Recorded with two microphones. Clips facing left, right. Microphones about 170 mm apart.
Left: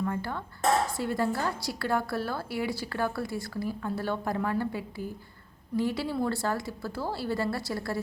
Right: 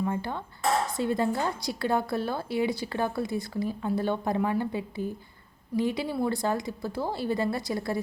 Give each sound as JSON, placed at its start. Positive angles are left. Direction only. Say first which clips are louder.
{"t": 0.0, "sound": "a woman's voice", "louder": "right 2 dB", "side_deg": -20}